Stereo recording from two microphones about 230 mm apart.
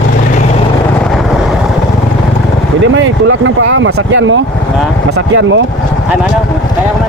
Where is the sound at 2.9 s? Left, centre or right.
Right.